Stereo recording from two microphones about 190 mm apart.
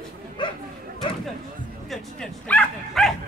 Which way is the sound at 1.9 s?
5° left (ahead or behind).